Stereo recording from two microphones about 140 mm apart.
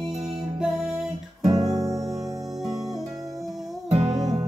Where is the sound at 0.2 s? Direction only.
Centre (ahead or behind).